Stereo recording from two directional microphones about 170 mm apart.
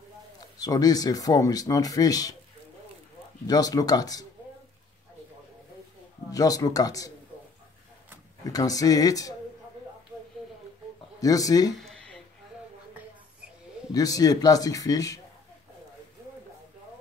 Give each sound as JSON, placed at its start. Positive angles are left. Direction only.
{"t": 0.6, "sound": "speech", "side_deg": 20}
{"t": 3.4, "sound": "speech", "side_deg": 20}
{"t": 6.3, "sound": "speech", "side_deg": 20}
{"t": 8.5, "sound": "speech", "side_deg": 20}
{"t": 11.1, "sound": "speech", "side_deg": 20}
{"t": 11.7, "sound": "a sound", "side_deg": 5}
{"t": 13.9, "sound": "speech", "side_deg": 20}